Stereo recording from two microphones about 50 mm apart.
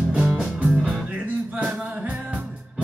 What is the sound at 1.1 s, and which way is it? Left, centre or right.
Music, right.